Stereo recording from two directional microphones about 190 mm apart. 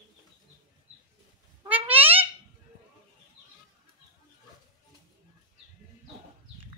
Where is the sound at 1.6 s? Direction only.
10° right (ahead or behind).